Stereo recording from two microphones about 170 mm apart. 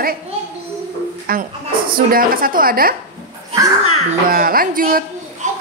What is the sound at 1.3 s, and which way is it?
A woman's voice, 60° right (ahead or behind).